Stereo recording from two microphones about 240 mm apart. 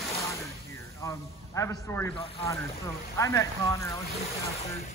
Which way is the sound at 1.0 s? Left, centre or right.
Centre.